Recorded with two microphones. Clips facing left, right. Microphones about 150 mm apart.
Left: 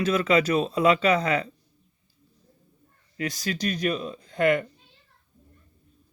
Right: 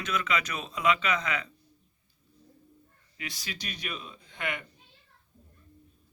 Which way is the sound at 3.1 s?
45° left (ahead or behind).